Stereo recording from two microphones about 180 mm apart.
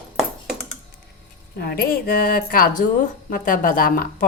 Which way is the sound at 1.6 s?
55° left (ahead or behind).